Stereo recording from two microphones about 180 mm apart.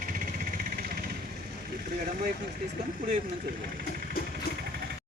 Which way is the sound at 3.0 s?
55° right (ahead or behind).